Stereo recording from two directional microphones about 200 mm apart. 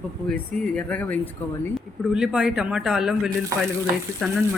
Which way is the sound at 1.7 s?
5° right (ahead or behind).